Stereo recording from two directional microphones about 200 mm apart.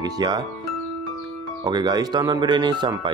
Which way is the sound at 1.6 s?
20° right (ahead or behind).